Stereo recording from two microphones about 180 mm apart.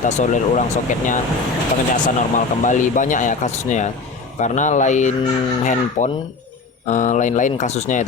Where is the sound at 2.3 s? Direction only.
45° left (ahead or behind).